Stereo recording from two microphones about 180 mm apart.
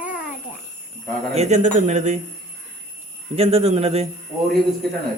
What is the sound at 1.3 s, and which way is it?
Speech, 40° right (ahead or behind).